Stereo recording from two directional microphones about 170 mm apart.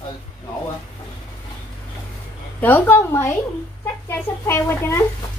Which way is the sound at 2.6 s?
10° left (ahead or behind).